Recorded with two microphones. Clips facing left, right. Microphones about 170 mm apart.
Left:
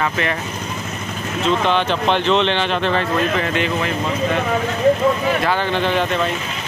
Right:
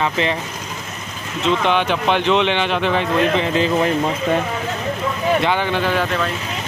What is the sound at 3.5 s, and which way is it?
Speech, 35° right (ahead or behind).